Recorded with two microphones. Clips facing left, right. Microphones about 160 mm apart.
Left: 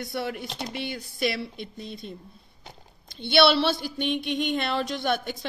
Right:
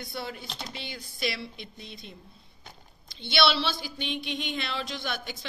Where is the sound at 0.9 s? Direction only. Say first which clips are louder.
Left 4 dB; 50° left (ahead or behind).